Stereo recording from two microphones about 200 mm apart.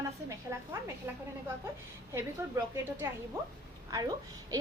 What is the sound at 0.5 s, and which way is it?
Speech, 15° right (ahead or behind).